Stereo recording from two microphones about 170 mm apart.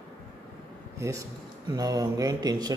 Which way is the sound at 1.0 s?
20° right (ahead or behind).